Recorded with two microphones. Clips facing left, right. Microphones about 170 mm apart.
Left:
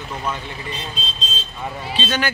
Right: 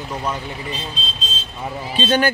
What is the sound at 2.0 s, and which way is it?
Speech, 50° right (ahead or behind).